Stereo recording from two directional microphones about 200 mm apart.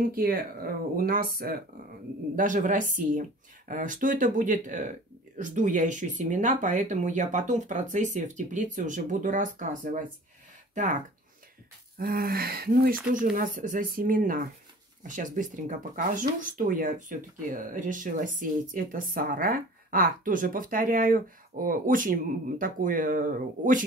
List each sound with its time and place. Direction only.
0.0 s speech: 45° right (ahead or behind)
12.0 s speech: 45° right (ahead or behind)